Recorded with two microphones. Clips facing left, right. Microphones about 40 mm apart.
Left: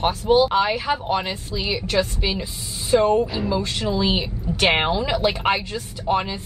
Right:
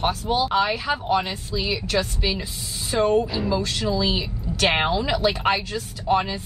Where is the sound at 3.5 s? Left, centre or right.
Left.